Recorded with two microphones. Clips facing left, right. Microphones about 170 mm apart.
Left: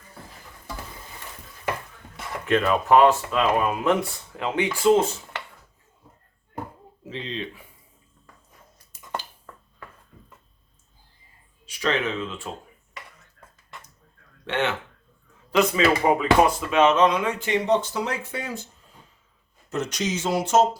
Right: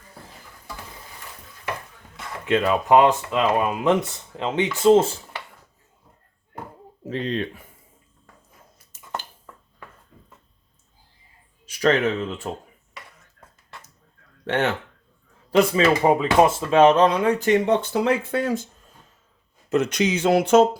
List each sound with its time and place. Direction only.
2.5 s speech: 20° right (ahead or behind)
7.0 s speech: 45° right (ahead or behind)
11.6 s speech: 45° right (ahead or behind)
14.4 s speech: 40° right (ahead or behind); by 18.6 s 90° right
19.7 s speech: 60° right (ahead or behind)